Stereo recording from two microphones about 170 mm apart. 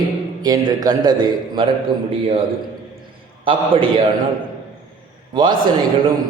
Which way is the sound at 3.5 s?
30° right (ahead or behind).